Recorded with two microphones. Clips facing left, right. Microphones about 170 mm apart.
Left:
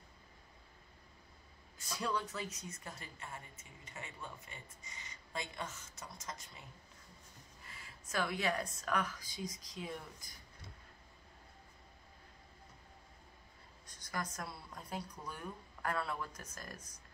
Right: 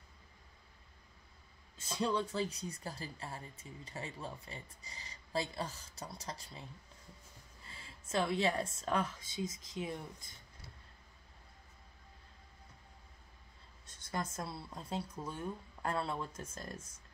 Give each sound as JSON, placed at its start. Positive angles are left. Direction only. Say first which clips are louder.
{"t": 1.8, "sound": "speech", "louder": "right 4 dB", "side_deg": -25}
{"t": 7.6, "sound": "speech", "louder": "right 2 dB", "side_deg": -30}
{"t": 13.8, "sound": "speech", "louder": "right 2 dB", "side_deg": -25}